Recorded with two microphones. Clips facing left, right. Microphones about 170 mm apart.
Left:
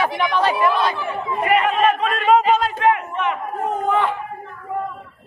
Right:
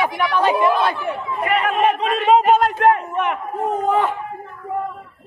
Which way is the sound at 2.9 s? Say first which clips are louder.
Right 2 dB; 50° right (ahead or behind).